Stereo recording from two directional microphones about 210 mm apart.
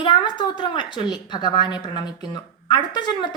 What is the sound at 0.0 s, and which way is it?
A woman's voice, 20° left (ahead or behind).